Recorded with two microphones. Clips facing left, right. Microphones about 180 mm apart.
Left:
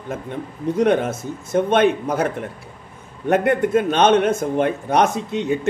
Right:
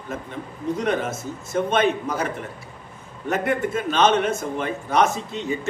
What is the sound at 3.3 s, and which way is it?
A man's voice, 60° left (ahead or behind).